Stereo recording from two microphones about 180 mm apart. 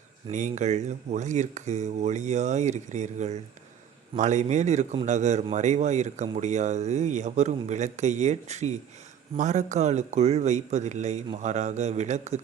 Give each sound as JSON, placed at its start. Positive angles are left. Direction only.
{"t": 0.3, "sound": "speech", "side_deg": -40}